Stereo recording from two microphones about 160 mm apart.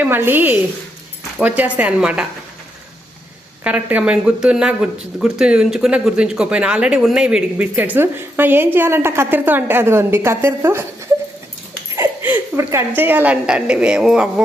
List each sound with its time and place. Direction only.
0.0 s speech: 15° right (ahead or behind)
3.6 s speech: 10° right (ahead or behind)
11.9 s speech: 15° right (ahead or behind)